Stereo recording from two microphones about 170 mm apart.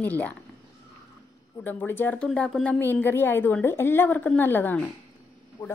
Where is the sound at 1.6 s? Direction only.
10° left (ahead or behind).